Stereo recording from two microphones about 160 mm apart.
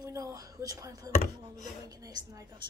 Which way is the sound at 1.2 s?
50° left (ahead or behind).